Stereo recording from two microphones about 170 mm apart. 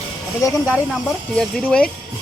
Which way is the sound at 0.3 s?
15° left (ahead or behind).